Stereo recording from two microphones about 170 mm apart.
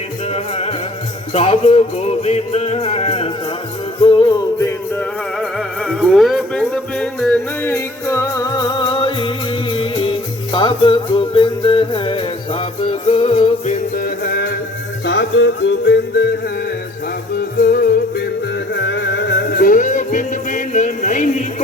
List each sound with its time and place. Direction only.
0.3 s music: 35° left (ahead or behind)
5.4 s music: centre (ahead or behind); by 13.7 s 35° left (ahead or behind)
13.9 s music: 65° left (ahead or behind)
15.0 s music: 90° left
17.6 s music: 65° left (ahead or behind)
18.7 s music: 90° left; by 21.4 s 45° left (ahead or behind)